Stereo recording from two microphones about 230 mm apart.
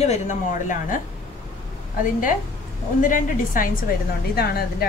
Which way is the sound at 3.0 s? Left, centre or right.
Left.